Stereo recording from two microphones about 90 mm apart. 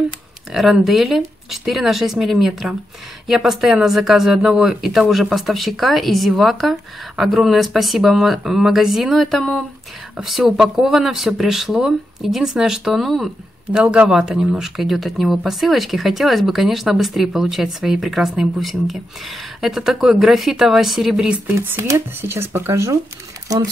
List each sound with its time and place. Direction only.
0.5 s speech: 5° right (ahead or behind)
21.5 s speech: 25° right (ahead or behind)